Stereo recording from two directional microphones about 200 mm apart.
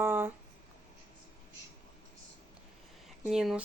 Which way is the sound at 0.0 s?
10° right (ahead or behind).